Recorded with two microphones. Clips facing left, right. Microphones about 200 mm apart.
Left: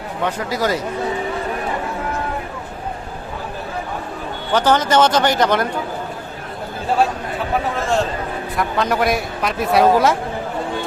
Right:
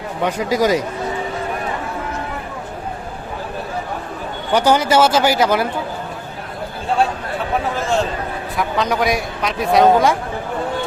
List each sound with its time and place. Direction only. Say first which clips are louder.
0.3 s speech: right 4 dB; 15° right (ahead or behind)
4.5 s speech: right 1 dB; 10° right (ahead or behind)
7.8 s a man's voice: even; centre (ahead or behind)